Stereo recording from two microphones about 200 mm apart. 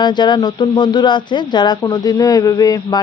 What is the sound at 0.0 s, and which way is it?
Speech, 20° left (ahead or behind).